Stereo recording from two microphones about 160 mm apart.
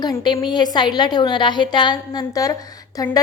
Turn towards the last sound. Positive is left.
turn(degrees=20)  # may be behind; listen again after turning